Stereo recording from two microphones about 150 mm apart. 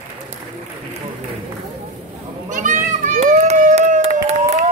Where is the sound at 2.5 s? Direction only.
60° right (ahead or behind).